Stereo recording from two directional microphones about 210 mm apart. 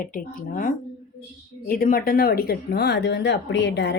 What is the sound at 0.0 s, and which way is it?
Speech, 40° left (ahead or behind).